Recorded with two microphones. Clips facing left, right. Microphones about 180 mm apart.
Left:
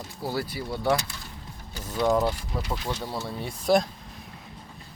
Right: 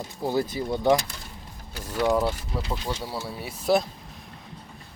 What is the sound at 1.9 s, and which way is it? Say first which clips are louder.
Speech: even; 5° right (ahead or behind).